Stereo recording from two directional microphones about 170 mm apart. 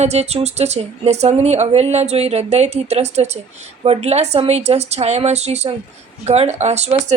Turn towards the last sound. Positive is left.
turn(degrees=-40)  # may be behind; listen again after turning